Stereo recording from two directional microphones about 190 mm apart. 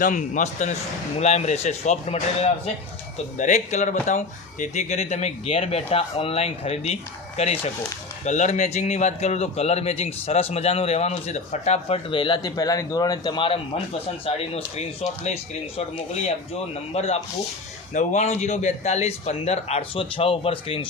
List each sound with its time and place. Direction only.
0.0 s a man's voice: 40° left (ahead or behind)
16.9 s a man's voice: 35° left (ahead or behind)